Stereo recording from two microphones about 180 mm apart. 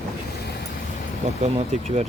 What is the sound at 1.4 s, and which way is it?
Speech, 35° right (ahead or behind).